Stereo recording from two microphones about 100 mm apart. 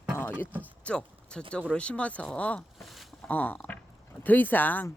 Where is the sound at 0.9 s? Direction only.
10° left (ahead or behind).